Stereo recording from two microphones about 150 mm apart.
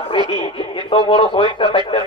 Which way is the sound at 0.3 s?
35° left (ahead or behind).